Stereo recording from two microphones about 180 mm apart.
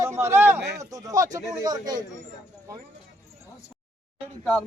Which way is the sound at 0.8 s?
20° right (ahead or behind).